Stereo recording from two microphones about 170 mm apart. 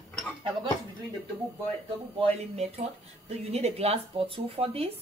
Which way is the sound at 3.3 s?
40° right (ahead or behind).